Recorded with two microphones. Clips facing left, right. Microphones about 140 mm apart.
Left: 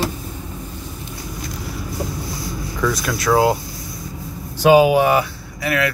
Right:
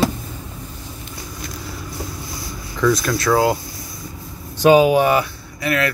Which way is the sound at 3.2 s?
15° left (ahead or behind).